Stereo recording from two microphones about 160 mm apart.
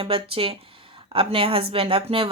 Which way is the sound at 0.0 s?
35° right (ahead or behind).